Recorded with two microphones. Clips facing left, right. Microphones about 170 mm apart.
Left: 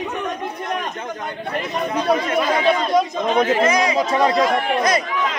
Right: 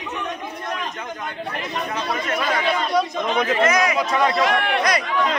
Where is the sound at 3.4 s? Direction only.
30° left (ahead or behind).